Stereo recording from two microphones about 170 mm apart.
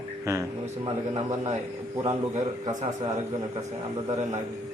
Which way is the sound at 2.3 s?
45° right (ahead or behind).